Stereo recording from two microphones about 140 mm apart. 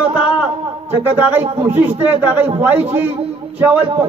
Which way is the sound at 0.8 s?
15° right (ahead or behind).